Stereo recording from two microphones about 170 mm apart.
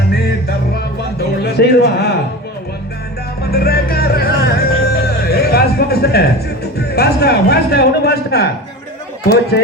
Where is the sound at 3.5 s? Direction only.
65° left (ahead or behind).